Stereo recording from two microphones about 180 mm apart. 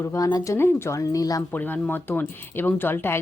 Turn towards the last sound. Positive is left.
turn(degrees=10)  # may be behind; listen again after turning